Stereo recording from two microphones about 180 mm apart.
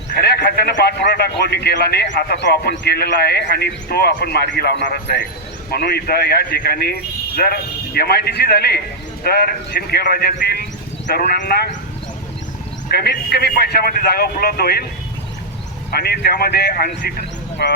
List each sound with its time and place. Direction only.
0.1 s speech: 60° left (ahead or behind)
12.9 s speech: 60° left (ahead or behind)
15.9 s speech: 60° left (ahead or behind)